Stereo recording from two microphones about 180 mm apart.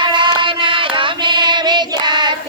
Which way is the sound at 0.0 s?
25° right (ahead or behind).